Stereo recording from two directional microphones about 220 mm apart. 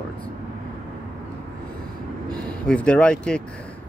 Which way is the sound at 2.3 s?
5° left (ahead or behind).